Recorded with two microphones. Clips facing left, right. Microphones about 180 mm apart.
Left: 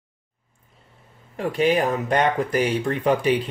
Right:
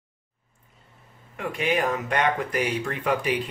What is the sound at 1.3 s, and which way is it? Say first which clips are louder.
Speech: left 6 dB; 35° left (ahead or behind).